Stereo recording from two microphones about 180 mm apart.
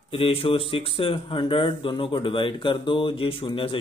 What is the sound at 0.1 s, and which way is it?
Speech, 30° left (ahead or behind).